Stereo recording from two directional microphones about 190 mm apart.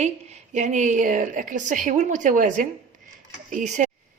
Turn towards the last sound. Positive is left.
turn(degrees=-40)  # may be behind; listen again after turning